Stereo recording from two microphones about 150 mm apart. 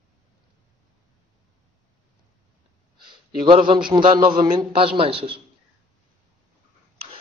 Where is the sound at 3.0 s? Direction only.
35° right (ahead or behind).